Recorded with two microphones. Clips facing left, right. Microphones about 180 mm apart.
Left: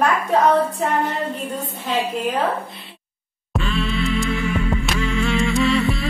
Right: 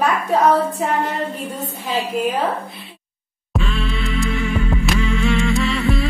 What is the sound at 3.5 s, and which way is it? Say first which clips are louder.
Music: left 1 dB; centre (ahead or behind).